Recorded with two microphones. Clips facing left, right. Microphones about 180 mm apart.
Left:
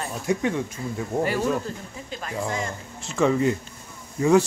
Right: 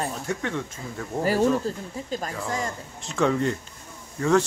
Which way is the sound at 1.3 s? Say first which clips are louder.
Right 3 dB; 40° right (ahead or behind).